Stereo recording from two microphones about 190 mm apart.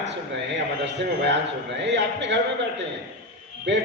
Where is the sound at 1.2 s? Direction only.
65° right (ahead or behind).